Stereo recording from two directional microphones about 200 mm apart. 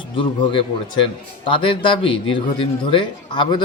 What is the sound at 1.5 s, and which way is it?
A man's voice, 25° left (ahead or behind).